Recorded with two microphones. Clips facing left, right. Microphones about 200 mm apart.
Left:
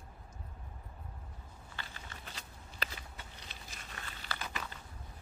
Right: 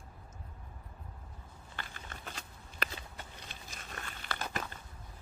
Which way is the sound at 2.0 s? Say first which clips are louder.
Right 3 dB; 50° right (ahead or behind).